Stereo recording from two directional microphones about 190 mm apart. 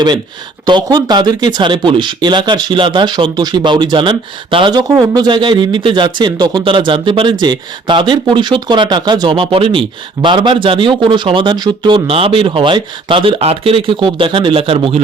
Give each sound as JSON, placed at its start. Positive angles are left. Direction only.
{"t": 0.6, "sound": "a man's voice", "side_deg": -20}